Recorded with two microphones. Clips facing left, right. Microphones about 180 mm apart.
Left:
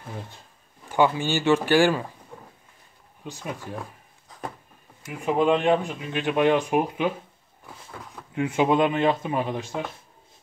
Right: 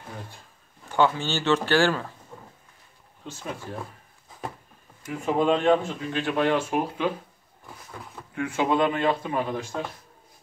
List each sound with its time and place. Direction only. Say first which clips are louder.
0.8 s speech: left 1 dB; 15° left (ahead or behind)
3.3 s speech: left 1 dB; 15° left (ahead or behind)
5.2 s speech: left 1 dB; 15° left (ahead or behind)
8.4 s speech: left 2 dB; 20° left (ahead or behind)